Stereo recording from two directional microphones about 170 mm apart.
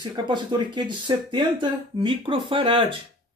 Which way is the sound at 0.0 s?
25° right (ahead or behind).